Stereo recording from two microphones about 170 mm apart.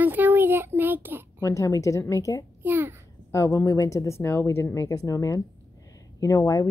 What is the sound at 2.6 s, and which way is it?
Speech, 10° right (ahead or behind).